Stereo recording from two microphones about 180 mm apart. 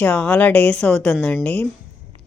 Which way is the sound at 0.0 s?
5° left (ahead or behind).